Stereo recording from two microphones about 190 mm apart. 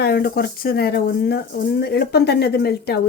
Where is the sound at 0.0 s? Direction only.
60° left (ahead or behind).